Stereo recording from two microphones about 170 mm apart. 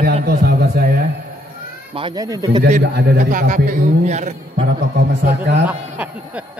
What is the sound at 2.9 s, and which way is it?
Speech, 70° right (ahead or behind).